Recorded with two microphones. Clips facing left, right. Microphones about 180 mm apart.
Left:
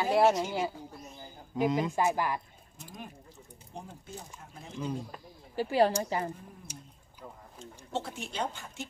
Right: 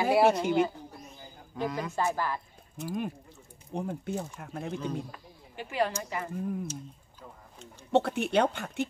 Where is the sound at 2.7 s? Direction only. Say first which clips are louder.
Right 12 dB; 65° right (ahead or behind).